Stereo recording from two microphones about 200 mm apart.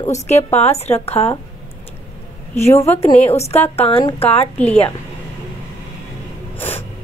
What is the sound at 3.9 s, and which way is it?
Speech, 30° left (ahead or behind).